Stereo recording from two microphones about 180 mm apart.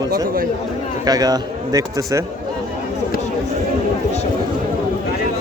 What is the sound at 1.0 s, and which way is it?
A man's voice, 20° right (ahead or behind).